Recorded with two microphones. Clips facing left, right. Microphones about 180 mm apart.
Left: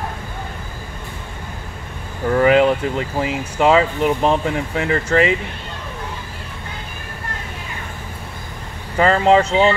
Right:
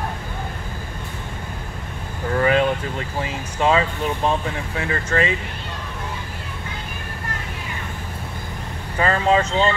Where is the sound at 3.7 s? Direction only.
20° left (ahead or behind).